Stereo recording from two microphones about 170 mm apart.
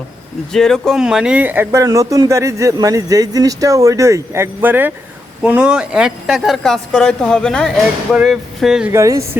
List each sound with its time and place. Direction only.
0.5 s a man's voice: 5° left (ahead or behind)
8.9 s speech: 15° right (ahead or behind)